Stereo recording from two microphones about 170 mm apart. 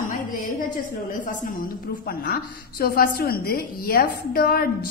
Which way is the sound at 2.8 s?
65° left (ahead or behind).